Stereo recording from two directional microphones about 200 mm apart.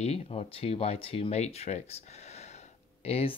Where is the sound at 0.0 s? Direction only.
30° left (ahead or behind).